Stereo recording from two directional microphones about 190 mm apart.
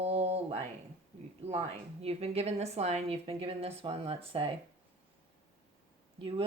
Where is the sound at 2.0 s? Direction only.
30° right (ahead or behind).